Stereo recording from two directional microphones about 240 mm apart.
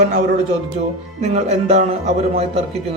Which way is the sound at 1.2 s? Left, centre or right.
Right.